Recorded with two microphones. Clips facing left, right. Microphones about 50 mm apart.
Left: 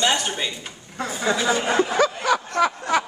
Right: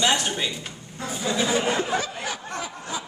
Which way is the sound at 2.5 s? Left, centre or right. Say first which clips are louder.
Left 11 dB; left.